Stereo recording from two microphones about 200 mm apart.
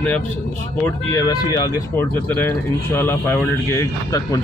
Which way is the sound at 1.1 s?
20° left (ahead or behind).